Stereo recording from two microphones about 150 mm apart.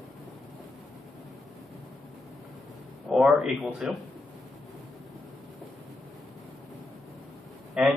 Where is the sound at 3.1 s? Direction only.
5° right (ahead or behind).